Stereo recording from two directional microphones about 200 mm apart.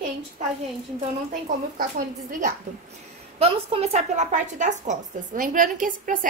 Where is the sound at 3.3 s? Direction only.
30° right (ahead or behind).